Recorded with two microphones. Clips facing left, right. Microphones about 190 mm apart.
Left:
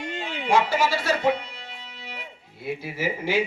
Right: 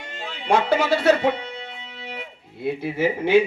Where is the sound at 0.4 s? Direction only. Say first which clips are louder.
Right 2 dB; 60° right (ahead or behind).